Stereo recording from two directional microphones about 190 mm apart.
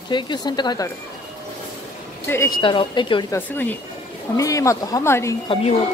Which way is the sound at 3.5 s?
10° left (ahead or behind).